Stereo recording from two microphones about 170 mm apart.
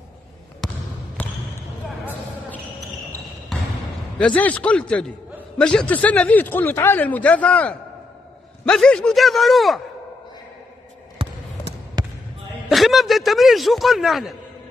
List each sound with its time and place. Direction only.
4.2 s a man's voice: 10° left (ahead or behind)
11.2 s basketball bounce: 30° right (ahead or behind)
12.6 s a man's voice: centre (ahead or behind)